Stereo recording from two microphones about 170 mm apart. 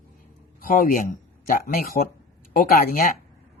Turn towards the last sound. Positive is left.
turn(degrees=55)  # may be behind; listen again after turning